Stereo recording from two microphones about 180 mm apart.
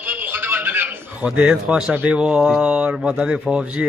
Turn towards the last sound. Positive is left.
turn(degrees=-5)  # may be behind; listen again after turning